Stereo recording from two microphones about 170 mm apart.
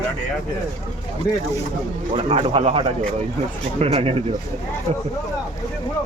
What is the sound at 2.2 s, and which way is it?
Speech, 35° right (ahead or behind).